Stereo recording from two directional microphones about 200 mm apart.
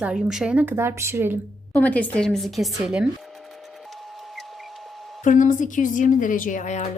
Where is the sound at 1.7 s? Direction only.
5° left (ahead or behind).